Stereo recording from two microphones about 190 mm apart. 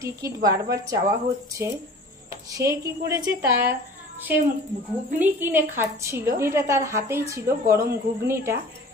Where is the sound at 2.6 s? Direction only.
15° right (ahead or behind).